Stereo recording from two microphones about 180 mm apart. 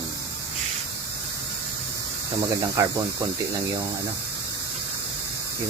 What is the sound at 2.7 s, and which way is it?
Speech, 15° right (ahead or behind).